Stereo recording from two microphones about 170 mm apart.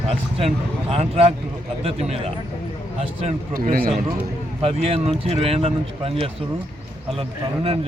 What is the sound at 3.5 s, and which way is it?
Speech, 55° right (ahead or behind).